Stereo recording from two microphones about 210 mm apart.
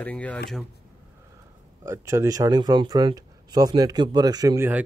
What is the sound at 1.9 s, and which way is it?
Speech, 15° right (ahead or behind).